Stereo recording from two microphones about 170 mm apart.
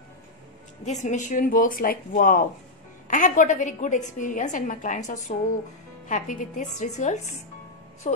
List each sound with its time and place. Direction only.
0.8 s a woman's voice: 45° left (ahead or behind)